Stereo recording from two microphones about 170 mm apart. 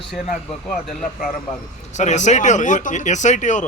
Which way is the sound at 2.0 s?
45° left (ahead or behind).